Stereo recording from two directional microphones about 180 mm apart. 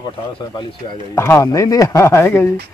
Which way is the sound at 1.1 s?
15° left (ahead or behind).